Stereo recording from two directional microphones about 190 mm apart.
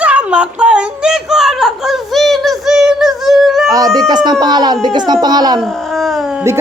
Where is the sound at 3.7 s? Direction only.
20° right (ahead or behind).